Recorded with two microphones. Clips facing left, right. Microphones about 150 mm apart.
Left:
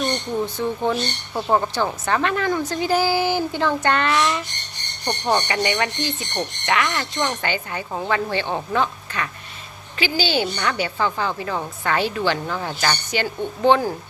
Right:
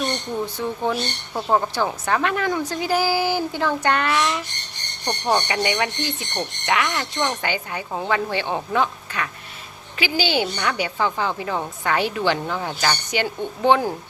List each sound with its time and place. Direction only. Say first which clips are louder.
0.0 s speech: left 2 dB; 10° right (ahead or behind)